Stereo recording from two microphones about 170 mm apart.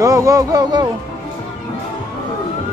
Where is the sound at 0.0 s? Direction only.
20° right (ahead or behind).